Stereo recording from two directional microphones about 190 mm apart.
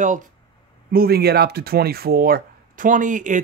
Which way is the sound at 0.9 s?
55° right (ahead or behind).